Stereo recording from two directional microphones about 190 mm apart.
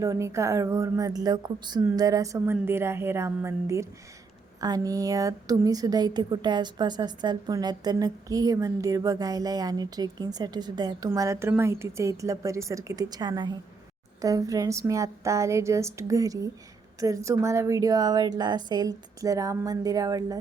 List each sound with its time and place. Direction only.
0.0 s a woman's voice: 15° right (ahead or behind)